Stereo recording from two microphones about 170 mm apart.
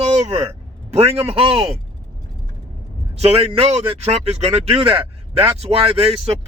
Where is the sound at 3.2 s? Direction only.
35° right (ahead or behind).